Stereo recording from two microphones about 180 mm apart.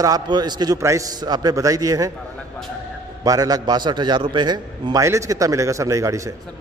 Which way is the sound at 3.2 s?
20° right (ahead or behind).